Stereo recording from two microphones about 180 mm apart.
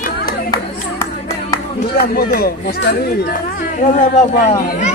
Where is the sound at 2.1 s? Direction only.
55° left (ahead or behind).